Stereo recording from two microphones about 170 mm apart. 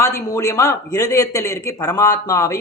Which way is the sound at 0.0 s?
20° left (ahead or behind).